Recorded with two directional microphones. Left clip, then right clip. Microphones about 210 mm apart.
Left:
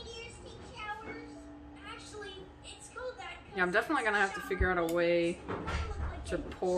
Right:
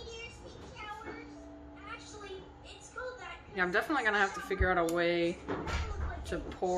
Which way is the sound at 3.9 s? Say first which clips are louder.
Even; 5° right (ahead or behind).